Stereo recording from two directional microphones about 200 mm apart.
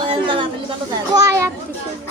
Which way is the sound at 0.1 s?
25° right (ahead or behind).